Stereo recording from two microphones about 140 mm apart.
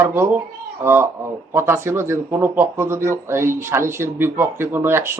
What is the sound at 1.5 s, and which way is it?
A man's voice, 20° right (ahead or behind).